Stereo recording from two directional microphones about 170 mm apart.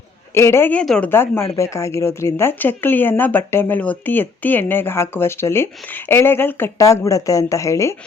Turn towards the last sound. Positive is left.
turn(degrees=15)  # may be behind; listen again after turning